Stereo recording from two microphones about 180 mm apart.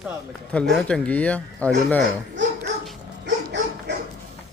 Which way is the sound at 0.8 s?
5° left (ahead or behind).